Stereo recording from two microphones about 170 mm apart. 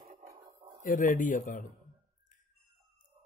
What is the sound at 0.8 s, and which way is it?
Speech, 50° left (ahead or behind).